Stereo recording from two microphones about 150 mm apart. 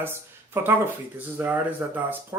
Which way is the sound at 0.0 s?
15° right (ahead or behind).